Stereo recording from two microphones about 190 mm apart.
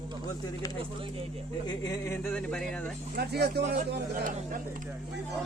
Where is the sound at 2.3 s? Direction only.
5° left (ahead or behind).